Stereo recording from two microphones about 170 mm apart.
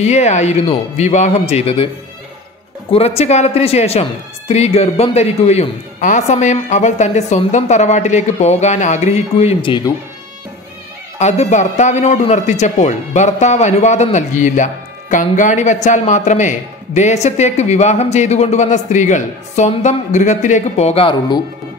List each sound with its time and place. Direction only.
0.0 s a woman's voice: 40° left (ahead or behind)
2.9 s a woman's voice: 35° left (ahead or behind)
11.1 s a man's voice: 40° left (ahead or behind)